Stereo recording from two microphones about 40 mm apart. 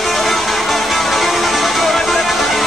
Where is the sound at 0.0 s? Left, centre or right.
Centre.